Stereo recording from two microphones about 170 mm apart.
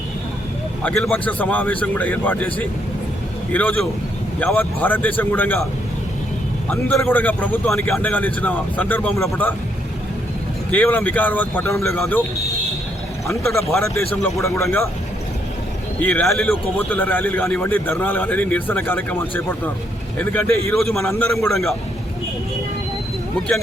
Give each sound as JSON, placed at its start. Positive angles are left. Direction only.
{"t": 0.8, "sound": "a man's voice", "side_deg": 5}
{"t": 6.7, "sound": "a man's voice", "side_deg": 10}
{"t": 10.7, "sound": "a man's voice", "side_deg": 10}
{"t": 13.2, "sound": "a man's voice", "side_deg": 15}
{"t": 16.0, "sound": "a man's voice", "side_deg": 10}
{"t": 21.0, "sound": "a man's voice", "side_deg": 15}
{"t": 21.3, "sound": "a man's voice", "side_deg": 0}